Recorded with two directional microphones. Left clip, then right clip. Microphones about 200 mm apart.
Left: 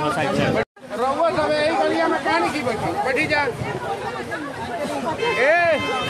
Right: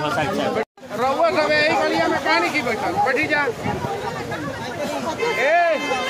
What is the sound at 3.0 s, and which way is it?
Speech, 20° left (ahead or behind).